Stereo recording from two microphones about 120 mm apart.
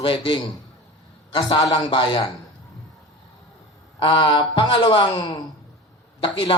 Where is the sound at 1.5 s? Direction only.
30° left (ahead or behind).